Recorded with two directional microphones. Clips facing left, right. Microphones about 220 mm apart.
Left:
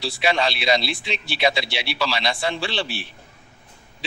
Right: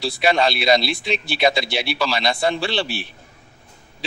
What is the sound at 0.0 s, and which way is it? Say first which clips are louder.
A man's voice: right 3 dB; 55° right (ahead or behind).